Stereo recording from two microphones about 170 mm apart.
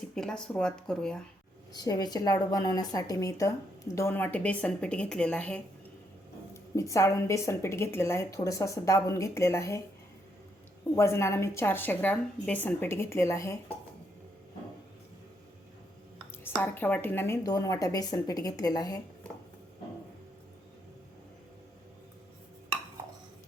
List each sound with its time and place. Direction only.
0.2 s speech: 5° left (ahead or behind)
1.7 s a woman's voice: 25° left (ahead or behind)
10.9 s a woman's voice: 15° left (ahead or behind)
16.4 s a woman's voice: 10° left (ahead or behind)